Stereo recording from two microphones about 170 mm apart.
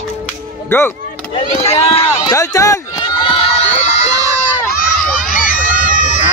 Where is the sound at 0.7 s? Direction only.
15° left (ahead or behind).